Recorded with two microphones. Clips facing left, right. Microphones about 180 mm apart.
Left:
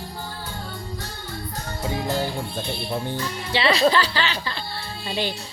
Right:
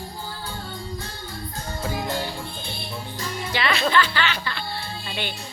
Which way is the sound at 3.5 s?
35° left (ahead or behind).